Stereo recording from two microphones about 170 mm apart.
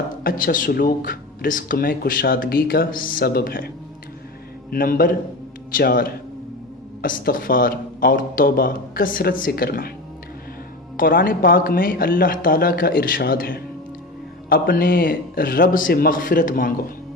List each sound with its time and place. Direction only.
0.2 s speech: 60° left (ahead or behind)
4.7 s speech: 60° left (ahead or behind)
10.9 s speech: 55° left (ahead or behind)